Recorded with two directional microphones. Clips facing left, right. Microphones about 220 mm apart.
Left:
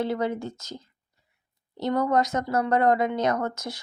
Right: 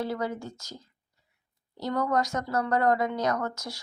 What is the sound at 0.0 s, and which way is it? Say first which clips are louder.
A woman's voice: left 4 dB; 20° left (ahead or behind).